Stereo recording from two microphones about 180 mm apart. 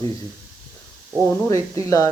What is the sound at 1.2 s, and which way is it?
Speech, 15° left (ahead or behind).